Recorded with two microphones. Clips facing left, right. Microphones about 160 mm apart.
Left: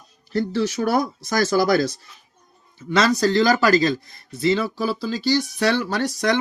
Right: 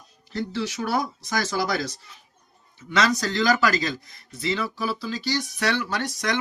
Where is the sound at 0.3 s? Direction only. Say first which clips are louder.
Left 6 dB; 40° left (ahead or behind).